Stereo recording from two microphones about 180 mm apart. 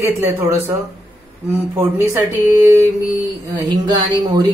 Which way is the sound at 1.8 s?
15° right (ahead or behind).